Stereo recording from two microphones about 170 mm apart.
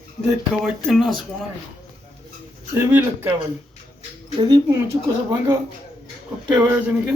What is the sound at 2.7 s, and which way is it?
Speech, 15° right (ahead or behind).